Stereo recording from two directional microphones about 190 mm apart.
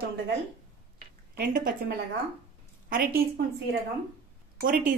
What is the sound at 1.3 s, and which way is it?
Speech, 50° right (ahead or behind).